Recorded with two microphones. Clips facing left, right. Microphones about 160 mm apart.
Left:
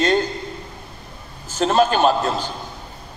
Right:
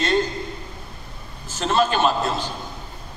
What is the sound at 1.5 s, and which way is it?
Speech, 40° left (ahead or behind).